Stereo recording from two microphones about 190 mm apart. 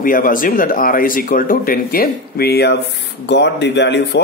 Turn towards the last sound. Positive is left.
turn(degrees=65)  # may be behind; listen again after turning